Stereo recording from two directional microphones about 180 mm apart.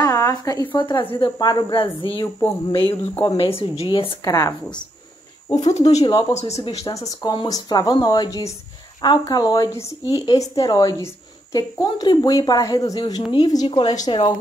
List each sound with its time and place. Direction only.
0.0 s a woman's voice: 20° left (ahead or behind)
3.2 s a woman's voice: 20° left (ahead or behind)
3.4 s a woman's voice: 30° left (ahead or behind)
4.3 s a woman's voice: 20° left (ahead or behind)
5.6 s a woman's voice: 40° left (ahead or behind)
6.8 s a woman's voice: 20° left (ahead or behind)